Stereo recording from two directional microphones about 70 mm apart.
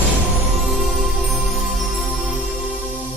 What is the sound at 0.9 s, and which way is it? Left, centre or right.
Music, centre.